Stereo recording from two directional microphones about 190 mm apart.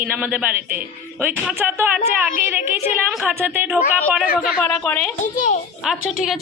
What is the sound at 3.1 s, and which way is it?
Speech, 5° right (ahead or behind).